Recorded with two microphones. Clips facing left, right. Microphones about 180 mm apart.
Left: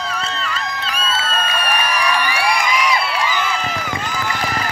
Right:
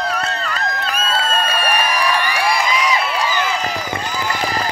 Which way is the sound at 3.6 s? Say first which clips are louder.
Right 1 dB; 35° right (ahead or behind).